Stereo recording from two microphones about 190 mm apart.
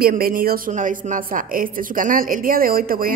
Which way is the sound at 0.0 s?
50° right (ahead or behind).